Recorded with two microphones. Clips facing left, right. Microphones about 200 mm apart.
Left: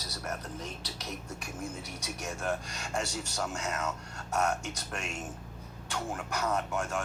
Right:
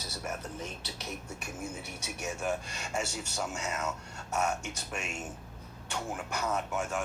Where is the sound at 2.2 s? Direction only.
5° right (ahead or behind).